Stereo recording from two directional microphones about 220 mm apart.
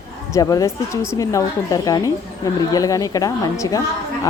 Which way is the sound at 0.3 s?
15° left (ahead or behind).